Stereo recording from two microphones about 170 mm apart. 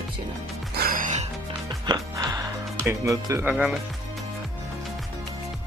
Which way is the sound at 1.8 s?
25° right (ahead or behind).